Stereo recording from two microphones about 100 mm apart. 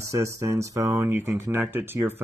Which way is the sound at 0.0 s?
30° right (ahead or behind).